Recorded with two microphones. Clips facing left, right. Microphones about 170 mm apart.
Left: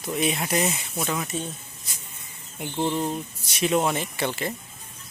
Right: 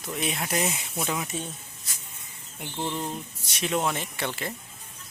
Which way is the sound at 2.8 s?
25° left (ahead or behind).